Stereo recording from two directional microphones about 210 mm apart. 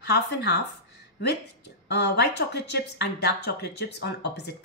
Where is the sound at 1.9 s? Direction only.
55° left (ahead or behind).